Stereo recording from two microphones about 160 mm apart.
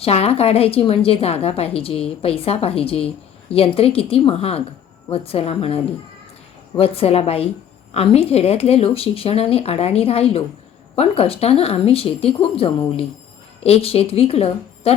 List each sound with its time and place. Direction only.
0.0 s a woman's voice: 40° left (ahead or behind)